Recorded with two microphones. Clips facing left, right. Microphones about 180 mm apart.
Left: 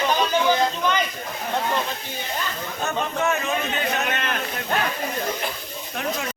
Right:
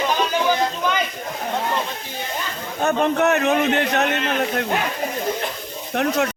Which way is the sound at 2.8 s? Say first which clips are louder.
Right 7 dB; 60° right (ahead or behind).